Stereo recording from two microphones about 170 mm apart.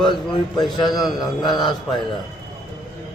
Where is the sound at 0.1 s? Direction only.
25° left (ahead or behind).